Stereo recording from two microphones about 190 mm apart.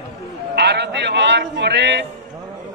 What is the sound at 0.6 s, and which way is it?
A man's voice, 65° right (ahead or behind).